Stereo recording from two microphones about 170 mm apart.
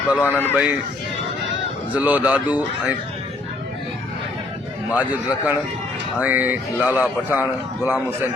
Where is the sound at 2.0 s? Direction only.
10° right (ahead or behind).